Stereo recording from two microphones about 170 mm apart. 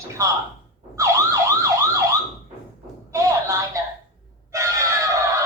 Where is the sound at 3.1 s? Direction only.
20° right (ahead or behind).